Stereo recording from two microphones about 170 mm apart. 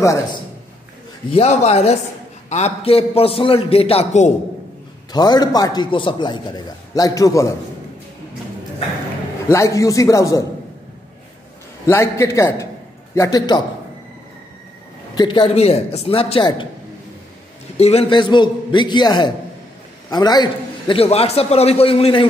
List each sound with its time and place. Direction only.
0.0 s a man's voice: 20° left (ahead or behind)
1.3 s a man's voice: 40° left (ahead or behind)
5.1 s a man's voice: 25° left (ahead or behind)
9.5 s a man's voice: 20° left (ahead or behind)
11.8 s a man's voice: 15° left (ahead or behind)
15.1 s a man's voice: 30° left (ahead or behind)
17.7 s a man's voice: 35° left (ahead or behind)